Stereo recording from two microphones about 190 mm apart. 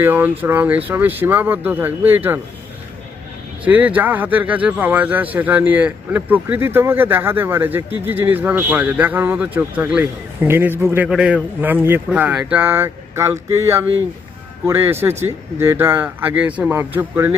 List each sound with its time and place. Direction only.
0.0 s speech: 10° right (ahead or behind)
3.6 s speech: 10° right (ahead or behind)